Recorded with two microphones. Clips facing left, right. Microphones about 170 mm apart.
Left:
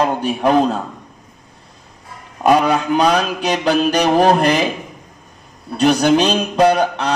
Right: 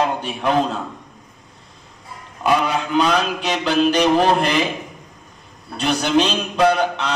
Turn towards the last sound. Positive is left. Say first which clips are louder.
# left 3 dB
turn(degrees=40)  # may be behind; listen again after turning